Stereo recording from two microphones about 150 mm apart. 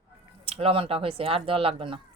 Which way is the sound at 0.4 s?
40° right (ahead or behind).